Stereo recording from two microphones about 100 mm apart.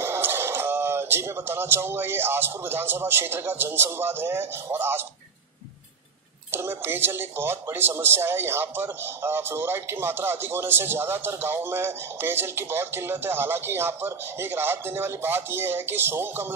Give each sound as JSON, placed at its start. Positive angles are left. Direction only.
{"t": 0.0, "sound": "speech", "side_deg": -25}
{"t": 6.5, "sound": "speech", "side_deg": -25}